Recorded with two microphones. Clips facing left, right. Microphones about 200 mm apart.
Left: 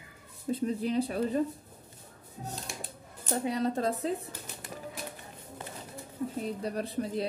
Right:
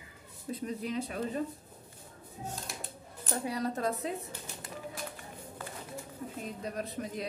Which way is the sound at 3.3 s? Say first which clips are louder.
Left 4 dB; 25° left (ahead or behind).